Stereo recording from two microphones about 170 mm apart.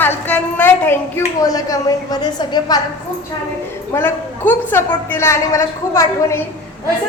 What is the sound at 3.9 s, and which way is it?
A woman's voice, 15° left (ahead or behind).